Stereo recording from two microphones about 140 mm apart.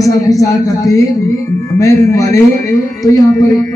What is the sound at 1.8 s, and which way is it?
Speech, 20° left (ahead or behind).